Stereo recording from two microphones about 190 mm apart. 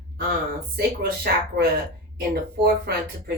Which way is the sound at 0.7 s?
60° right (ahead or behind).